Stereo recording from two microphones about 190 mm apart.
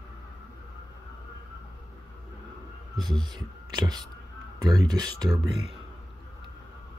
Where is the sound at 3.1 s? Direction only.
20° right (ahead or behind).